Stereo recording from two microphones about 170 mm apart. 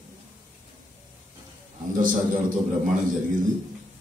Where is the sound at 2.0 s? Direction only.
55° right (ahead or behind).